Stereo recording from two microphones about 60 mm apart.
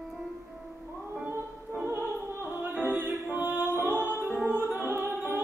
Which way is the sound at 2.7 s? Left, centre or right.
Right.